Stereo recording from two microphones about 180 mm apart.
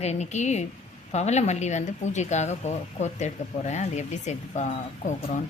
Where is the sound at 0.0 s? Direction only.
40° left (ahead or behind).